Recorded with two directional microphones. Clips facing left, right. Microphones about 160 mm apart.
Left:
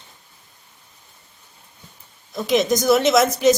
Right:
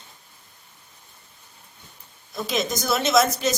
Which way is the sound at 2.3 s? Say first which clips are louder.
Left 7 dB; 15° left (ahead or behind).